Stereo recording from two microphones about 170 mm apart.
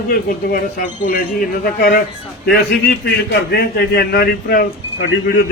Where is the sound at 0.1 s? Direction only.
55° left (ahead or behind).